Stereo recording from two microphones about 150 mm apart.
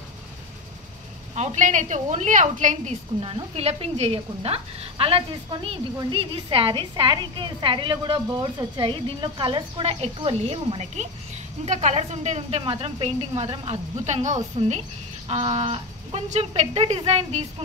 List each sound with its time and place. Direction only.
1.3 s a woman's voice: 50° right (ahead or behind)
3.2 s a woman's voice: 35° right (ahead or behind)